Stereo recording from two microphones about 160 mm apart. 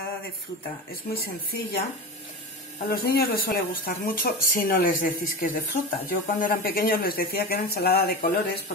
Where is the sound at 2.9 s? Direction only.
70° left (ahead or behind).